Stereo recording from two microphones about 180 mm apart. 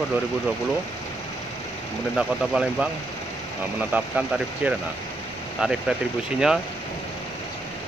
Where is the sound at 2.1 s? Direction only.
5° right (ahead or behind).